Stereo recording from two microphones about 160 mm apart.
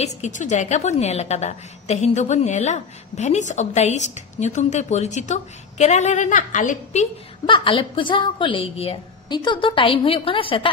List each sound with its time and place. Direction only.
0.0 s a woman's voice: 50° left (ahead or behind)
7.4 s a woman's voice: 30° left (ahead or behind)